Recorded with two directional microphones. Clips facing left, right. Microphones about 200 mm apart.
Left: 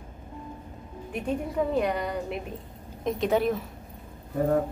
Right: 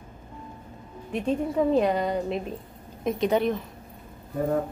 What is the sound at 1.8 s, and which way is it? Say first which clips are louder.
Speech: right 4 dB; 25° right (ahead or behind).